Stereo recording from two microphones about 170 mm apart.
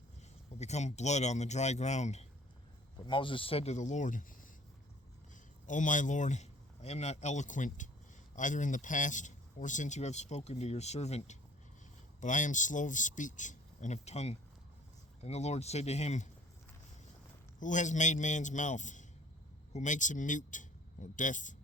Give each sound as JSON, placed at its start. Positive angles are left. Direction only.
{"t": 0.6, "sound": "speech", "side_deg": 40}
{"t": 3.1, "sound": "speech", "side_deg": 30}
{"t": 5.6, "sound": "a man's voice", "side_deg": 50}
{"t": 17.6, "sound": "a man's voice", "side_deg": 45}